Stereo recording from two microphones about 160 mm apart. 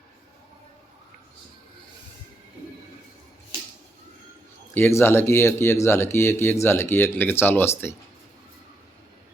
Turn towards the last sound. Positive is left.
turn(degrees=15)  # may be behind; listen again after turning